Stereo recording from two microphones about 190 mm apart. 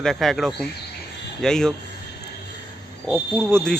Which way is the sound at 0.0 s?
Centre (ahead or behind).